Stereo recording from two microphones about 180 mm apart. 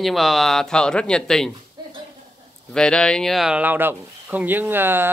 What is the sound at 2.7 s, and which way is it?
Speech, 5° left (ahead or behind).